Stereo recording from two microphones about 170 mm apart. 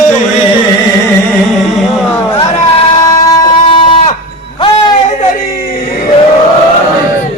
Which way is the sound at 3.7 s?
35° left (ahead or behind).